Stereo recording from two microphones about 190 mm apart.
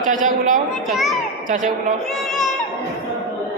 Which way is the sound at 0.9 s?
Centre (ahead or behind).